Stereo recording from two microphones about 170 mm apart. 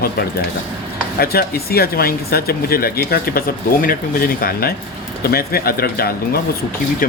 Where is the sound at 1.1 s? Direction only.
65° left (ahead or behind).